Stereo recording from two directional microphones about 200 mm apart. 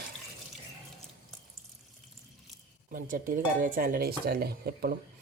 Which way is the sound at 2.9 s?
40° right (ahead or behind).